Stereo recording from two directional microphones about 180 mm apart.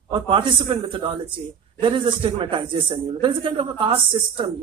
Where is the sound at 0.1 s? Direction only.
30° right (ahead or behind).